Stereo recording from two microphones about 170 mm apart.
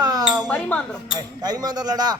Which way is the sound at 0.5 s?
10° left (ahead or behind).